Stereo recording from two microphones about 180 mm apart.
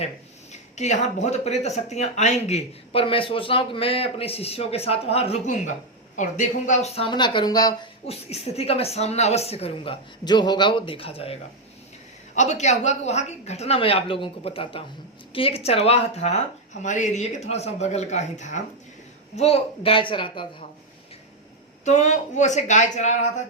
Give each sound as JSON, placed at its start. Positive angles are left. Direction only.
{"t": 0.5, "sound": "a woman's voice", "side_deg": 40}
{"t": 21.8, "sound": "speech", "side_deg": 40}